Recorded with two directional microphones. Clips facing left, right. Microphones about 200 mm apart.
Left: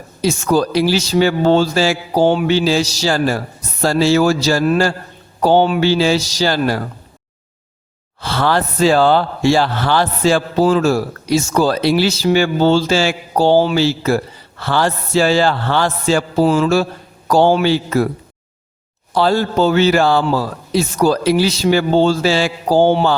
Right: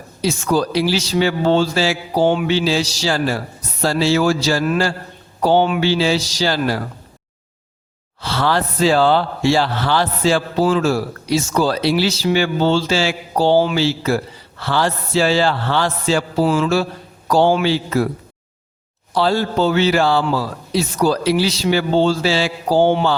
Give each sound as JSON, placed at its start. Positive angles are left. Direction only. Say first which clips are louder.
{"t": 0.2, "sound": "speech", "louder": "left 3 dB", "side_deg": 45}
{"t": 8.2, "sound": "speech", "louder": "left 2 dB", "side_deg": 50}
{"t": 19.1, "sound": "speech", "louder": "left 2 dB", "side_deg": 50}